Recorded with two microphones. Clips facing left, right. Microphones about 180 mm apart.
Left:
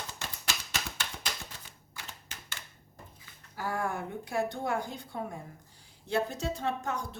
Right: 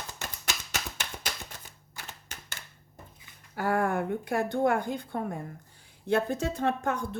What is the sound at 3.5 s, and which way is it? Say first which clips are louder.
Speech: right 6 dB; 60° right (ahead or behind).